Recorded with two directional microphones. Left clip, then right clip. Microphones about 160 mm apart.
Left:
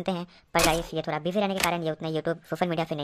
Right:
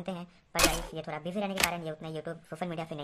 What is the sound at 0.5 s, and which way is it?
Speech, centre (ahead or behind).